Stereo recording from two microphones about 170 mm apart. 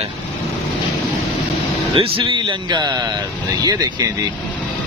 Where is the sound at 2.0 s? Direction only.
30° right (ahead or behind).